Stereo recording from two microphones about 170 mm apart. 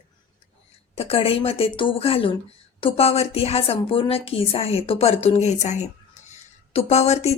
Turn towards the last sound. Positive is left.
turn(degrees=40)  # may be behind; listen again after turning